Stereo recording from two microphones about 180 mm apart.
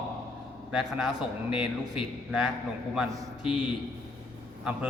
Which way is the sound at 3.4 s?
30° left (ahead or behind).